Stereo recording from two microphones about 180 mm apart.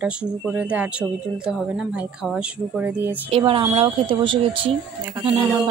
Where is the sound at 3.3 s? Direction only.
30° right (ahead or behind).